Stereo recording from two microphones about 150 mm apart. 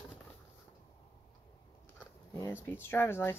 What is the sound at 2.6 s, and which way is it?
Speech, 15° left (ahead or behind).